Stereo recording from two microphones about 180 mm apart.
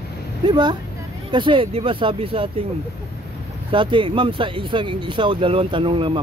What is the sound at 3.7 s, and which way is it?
Speech, 30° right (ahead or behind).